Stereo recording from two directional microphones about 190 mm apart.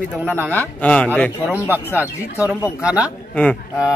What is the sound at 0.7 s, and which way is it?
Speech, 5° left (ahead or behind).